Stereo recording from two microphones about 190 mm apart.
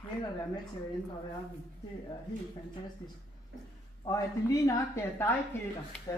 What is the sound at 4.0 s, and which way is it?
A man's voice, 20° left (ahead or behind).